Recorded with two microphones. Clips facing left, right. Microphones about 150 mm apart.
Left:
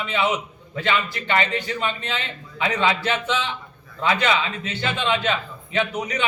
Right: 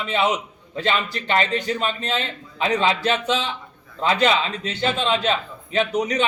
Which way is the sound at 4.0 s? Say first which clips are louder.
Right 2 dB; 35° right (ahead or behind).